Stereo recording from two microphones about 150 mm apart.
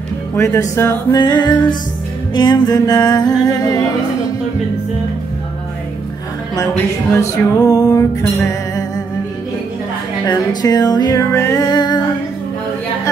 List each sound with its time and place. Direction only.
0.4 s music: 20° left (ahead or behind)
7.2 s music: 25° left (ahead or behind)
10.2 s music: 25° left (ahead or behind)